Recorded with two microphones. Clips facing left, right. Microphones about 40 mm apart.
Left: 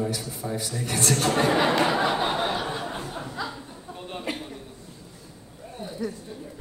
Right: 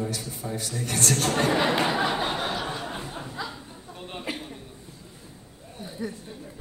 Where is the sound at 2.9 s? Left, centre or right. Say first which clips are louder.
Left 2 dB; centre.